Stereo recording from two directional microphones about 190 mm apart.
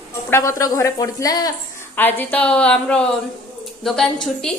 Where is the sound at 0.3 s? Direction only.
15° left (ahead or behind).